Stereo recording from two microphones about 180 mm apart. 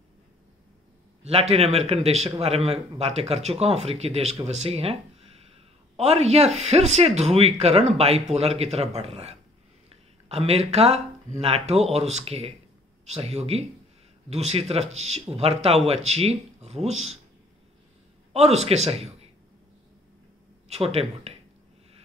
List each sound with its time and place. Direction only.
1.2 s speech: 35° right (ahead or behind)
5.9 s speech: 35° right (ahead or behind)
9.8 s a sound: 35° right (ahead or behind)
11.4 s speech: 35° right (ahead or behind)
18.3 s a man's voice: 35° right (ahead or behind)
20.6 s speech: 35° right (ahead or behind)